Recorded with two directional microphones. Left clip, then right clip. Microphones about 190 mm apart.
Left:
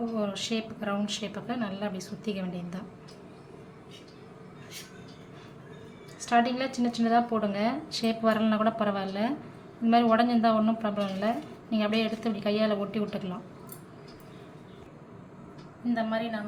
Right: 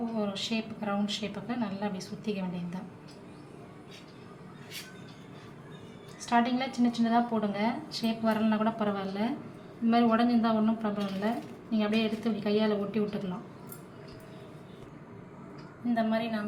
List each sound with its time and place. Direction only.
0.2 s a woman's voice: 20° left (ahead or behind)
6.1 s a woman's voice: 20° left (ahead or behind)
15.9 s a woman's voice: centre (ahead or behind)